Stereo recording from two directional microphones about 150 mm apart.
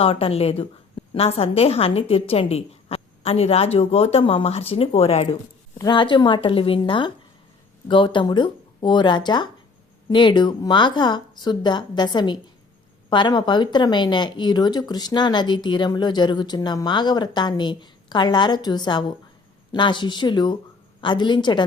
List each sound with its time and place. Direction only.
0.0 s a woman's voice: 40° left (ahead or behind)
5.7 s a woman's voice: 25° left (ahead or behind)